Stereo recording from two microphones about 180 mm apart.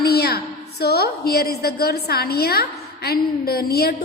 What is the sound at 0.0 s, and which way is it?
A woman's voice, 60° left (ahead or behind).